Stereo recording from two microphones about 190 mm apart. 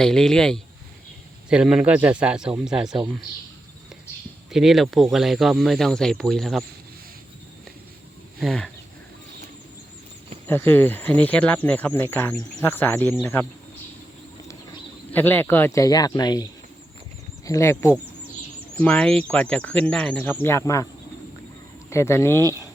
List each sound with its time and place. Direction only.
0.0 s speech: 5° left (ahead or behind)
4.5 s speech: centre (ahead or behind)
8.4 s speech: 5° left (ahead or behind)
10.4 s speech: 10° left (ahead or behind)
15.1 s speech: 10° left (ahead or behind)
21.8 s speech: 15° left (ahead or behind)